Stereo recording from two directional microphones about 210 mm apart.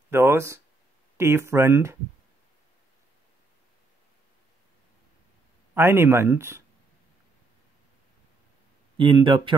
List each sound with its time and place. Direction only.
0.1 s speech: 10° right (ahead or behind)
5.8 s speech: 10° right (ahead or behind)
8.9 s speech: 25° right (ahead or behind)